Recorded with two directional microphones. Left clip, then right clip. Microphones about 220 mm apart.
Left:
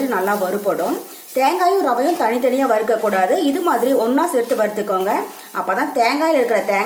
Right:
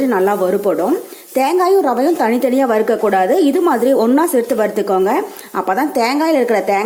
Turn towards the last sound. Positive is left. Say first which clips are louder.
# right 3 dB
turn(degrees=-45)  # may be behind; listen again after turning